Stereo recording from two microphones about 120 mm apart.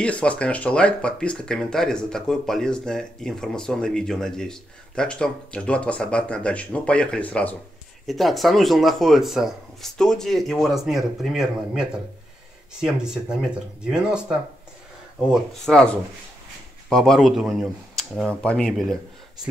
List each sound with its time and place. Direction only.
0.0 s speech: 10° left (ahead or behind)
8.1 s speech: centre (ahead or behind)
16.9 s speech: centre (ahead or behind)